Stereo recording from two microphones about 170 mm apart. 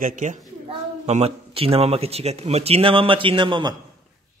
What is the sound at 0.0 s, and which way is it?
Speech, 50° right (ahead or behind).